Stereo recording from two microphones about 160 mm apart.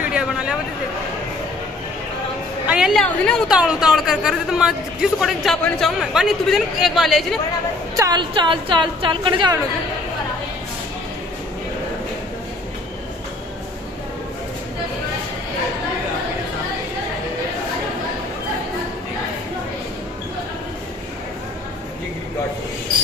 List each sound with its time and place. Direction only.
0.1 s a sound: 5° right (ahead or behind)
2.7 s a woman's voice: centre (ahead or behind)
7.9 s a woman's voice: 25° right (ahead or behind)